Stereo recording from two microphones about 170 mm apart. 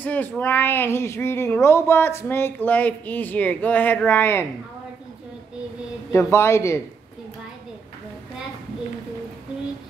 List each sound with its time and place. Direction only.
0.0 s speech: 10° left (ahead or behind)
6.1 s speech: 15° left (ahead or behind)